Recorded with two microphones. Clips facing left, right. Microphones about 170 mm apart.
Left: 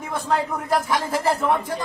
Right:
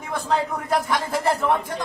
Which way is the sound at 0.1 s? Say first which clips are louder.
Even; centre (ahead or behind).